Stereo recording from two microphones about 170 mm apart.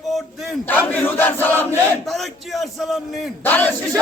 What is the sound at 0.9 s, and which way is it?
Battle cry, 10° left (ahead or behind).